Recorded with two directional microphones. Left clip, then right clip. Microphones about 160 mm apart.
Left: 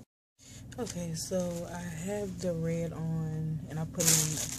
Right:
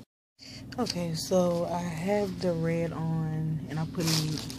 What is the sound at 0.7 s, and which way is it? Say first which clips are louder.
Speech: right 7 dB; 10° right (ahead or behind).